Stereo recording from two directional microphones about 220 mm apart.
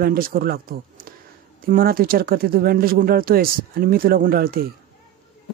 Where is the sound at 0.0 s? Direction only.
40° right (ahead or behind).